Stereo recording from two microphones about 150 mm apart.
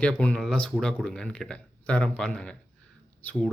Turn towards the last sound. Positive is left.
turn(degrees=10)  # may be behind; listen again after turning